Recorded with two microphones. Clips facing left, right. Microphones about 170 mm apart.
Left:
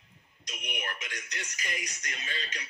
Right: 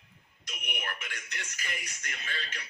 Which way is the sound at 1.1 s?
15° left (ahead or behind).